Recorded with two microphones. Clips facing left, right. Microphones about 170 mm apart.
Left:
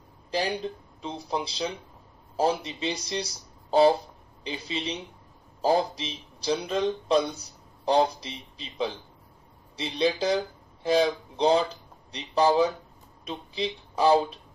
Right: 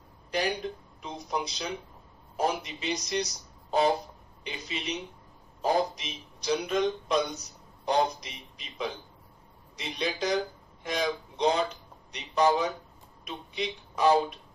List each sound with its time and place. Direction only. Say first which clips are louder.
0.3 s speech: left 1 dB; 30° left (ahead or behind)